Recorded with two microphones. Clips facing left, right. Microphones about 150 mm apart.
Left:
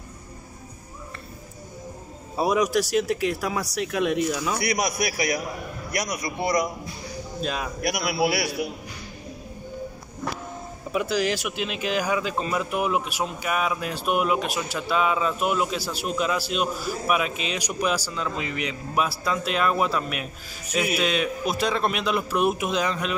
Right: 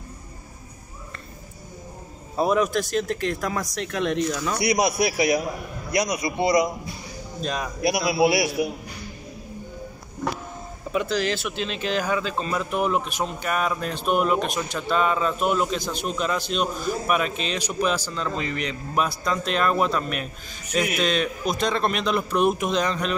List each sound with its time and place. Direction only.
2.3 s speech: 10° left (ahead or behind)
4.6 s a man's voice: 20° right (ahead or behind)
7.8 s a man's voice: 25° right (ahead or behind)
10.9 s speech: 10° left (ahead or behind)